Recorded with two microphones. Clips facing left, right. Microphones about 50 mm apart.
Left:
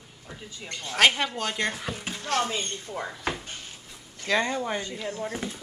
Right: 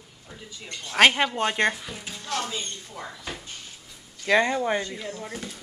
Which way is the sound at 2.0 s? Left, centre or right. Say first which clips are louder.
Left 4 dB; left.